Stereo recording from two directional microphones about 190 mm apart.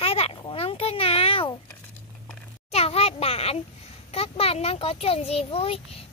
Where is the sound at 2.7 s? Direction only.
35° left (ahead or behind).